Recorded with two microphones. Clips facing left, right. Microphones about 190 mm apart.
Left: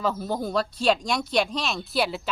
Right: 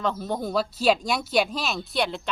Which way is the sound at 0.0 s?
5° left (ahead or behind).